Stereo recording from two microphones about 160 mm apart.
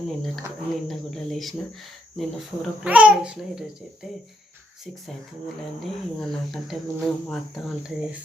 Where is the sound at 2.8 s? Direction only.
10° right (ahead or behind).